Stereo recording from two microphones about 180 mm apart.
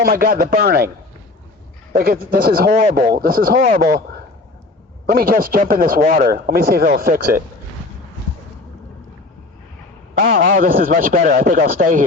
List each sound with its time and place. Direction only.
0.0 s speech: 50° right (ahead or behind)
1.9 s speech: 55° right (ahead or behind)
5.0 s speech: 55° right (ahead or behind)
10.2 s speech: 45° right (ahead or behind)